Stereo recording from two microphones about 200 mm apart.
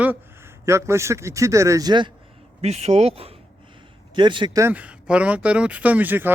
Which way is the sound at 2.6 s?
30° right (ahead or behind).